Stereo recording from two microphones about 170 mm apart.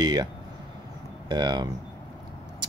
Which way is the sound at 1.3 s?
25° right (ahead or behind).